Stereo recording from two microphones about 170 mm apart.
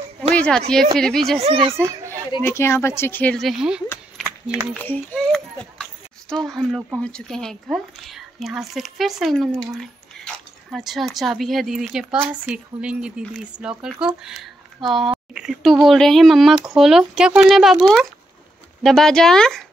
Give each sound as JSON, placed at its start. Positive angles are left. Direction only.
{"t": 0.3, "sound": "speech", "side_deg": 5}
{"t": 1.4, "sound": "a child's voice", "side_deg": -35}
{"t": 2.4, "sound": "speech", "side_deg": 15}
{"t": 4.2, "sound": "run", "side_deg": -5}
{"t": 4.8, "sound": "a sound", "side_deg": 5}
{"t": 6.3, "sound": "speech", "side_deg": 0}